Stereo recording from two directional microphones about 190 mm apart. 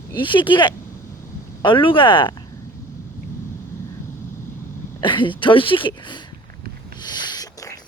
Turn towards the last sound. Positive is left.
turn(degrees=20)  # may be behind; listen again after turning